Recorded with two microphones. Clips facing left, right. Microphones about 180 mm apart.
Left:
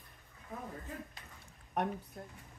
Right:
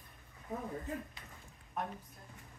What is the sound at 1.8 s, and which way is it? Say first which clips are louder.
Speech: left 5 dB; 70° left (ahead or behind).